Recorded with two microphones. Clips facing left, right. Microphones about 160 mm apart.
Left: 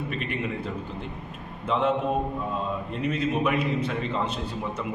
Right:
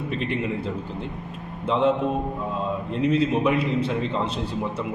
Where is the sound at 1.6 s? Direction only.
30° right (ahead or behind).